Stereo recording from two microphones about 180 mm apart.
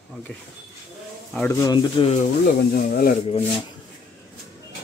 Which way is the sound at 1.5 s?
20° left (ahead or behind).